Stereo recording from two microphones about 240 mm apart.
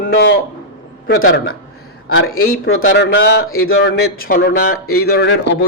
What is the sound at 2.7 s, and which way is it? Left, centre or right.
Speech, left.